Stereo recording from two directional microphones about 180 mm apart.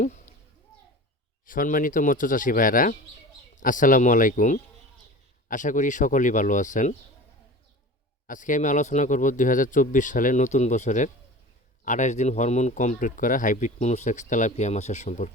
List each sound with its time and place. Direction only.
1.5 s speech: 50° left (ahead or behind)
8.3 s speech: 45° left (ahead or behind)